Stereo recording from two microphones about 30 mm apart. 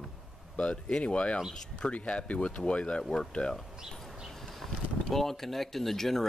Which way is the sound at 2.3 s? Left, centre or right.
Left.